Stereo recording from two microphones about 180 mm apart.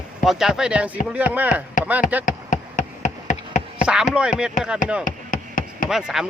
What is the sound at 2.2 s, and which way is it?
Insect, 45° left (ahead or behind).